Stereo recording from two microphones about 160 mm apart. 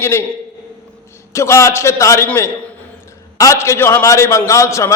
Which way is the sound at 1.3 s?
20° left (ahead or behind).